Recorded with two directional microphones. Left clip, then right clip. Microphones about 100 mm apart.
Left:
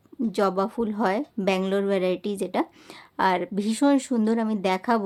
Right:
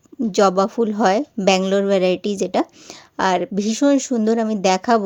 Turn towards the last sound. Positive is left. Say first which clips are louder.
# right 7 dB
turn(degrees=-40)  # may be behind; listen again after turning